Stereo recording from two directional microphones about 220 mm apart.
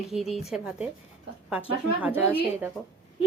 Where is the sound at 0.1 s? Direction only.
Centre (ahead or behind).